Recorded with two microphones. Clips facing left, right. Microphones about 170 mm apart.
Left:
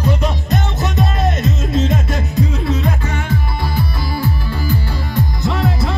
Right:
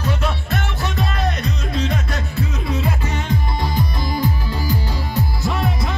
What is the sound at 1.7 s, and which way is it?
Music, 45° left (ahead or behind).